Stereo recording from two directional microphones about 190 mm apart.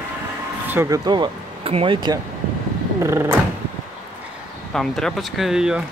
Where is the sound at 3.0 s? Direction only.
15° right (ahead or behind).